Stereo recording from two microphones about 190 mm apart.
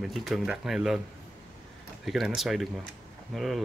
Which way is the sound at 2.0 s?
Centre (ahead or behind).